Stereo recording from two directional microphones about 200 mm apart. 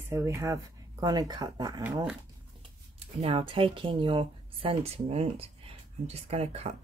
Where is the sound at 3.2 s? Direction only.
25° right (ahead or behind).